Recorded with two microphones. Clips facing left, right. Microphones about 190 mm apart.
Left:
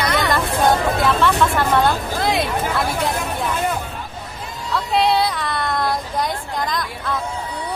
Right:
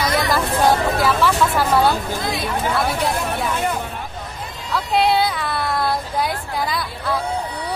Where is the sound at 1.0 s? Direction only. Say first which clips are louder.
Left 1 dB; 5° right (ahead or behind).